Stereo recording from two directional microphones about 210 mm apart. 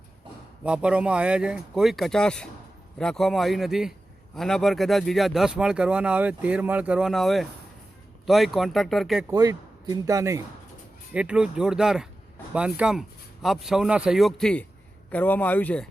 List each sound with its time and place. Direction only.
0.6 s speech: 5° right (ahead or behind)
9.3 s speech: 15° right (ahead or behind); by 15.9 s 5° left (ahead or behind)